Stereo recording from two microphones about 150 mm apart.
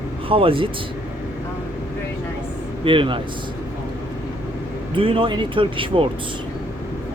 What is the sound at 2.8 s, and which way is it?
Speech, 35° right (ahead or behind).